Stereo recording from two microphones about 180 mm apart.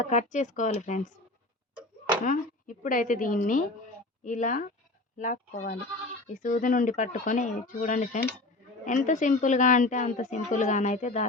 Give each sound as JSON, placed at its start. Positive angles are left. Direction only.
{"t": 0.0, "sound": "a woman's voice", "side_deg": 40}
{"t": 2.2, "sound": "a woman's voice", "side_deg": 45}